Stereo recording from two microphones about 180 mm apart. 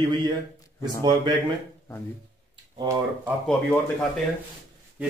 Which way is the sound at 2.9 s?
15° right (ahead or behind).